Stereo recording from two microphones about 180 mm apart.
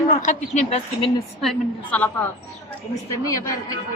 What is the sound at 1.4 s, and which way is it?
Speech, 5° left (ahead or behind).